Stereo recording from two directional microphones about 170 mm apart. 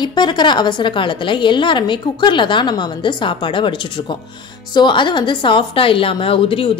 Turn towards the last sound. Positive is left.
turn(degrees=30)  # may be behind; listen again after turning